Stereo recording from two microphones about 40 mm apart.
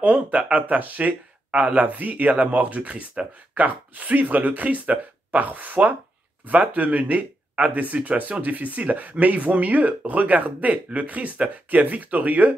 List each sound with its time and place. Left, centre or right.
0.0 s speech: right